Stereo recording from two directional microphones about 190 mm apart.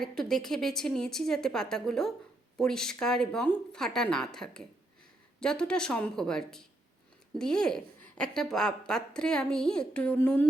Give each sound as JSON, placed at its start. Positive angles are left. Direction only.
{"t": 0.0, "sound": "a woman's voice", "side_deg": 5}